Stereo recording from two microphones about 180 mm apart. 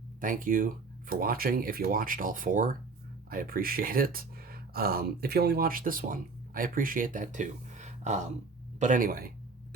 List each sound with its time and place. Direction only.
0.2 s speech: 50° right (ahead or behind)